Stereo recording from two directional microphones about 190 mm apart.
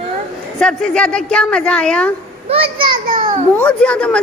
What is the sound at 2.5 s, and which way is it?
Speech, 30° right (ahead or behind).